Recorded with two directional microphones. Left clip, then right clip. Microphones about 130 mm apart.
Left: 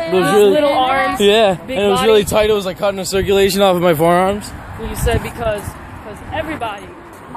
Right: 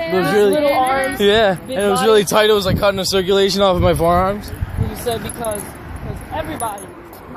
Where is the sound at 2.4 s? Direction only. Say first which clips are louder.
Right 1 dB; 40° right (ahead or behind).